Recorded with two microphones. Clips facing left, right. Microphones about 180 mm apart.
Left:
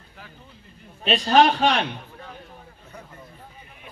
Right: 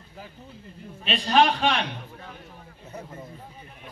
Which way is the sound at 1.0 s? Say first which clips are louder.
Left 3 dB; 40° left (ahead or behind).